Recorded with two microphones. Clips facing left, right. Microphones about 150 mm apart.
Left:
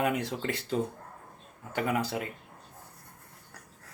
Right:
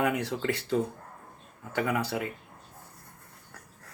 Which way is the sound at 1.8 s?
20° left (ahead or behind).